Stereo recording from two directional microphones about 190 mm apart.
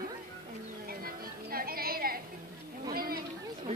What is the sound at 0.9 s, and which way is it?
Music, 50° right (ahead or behind).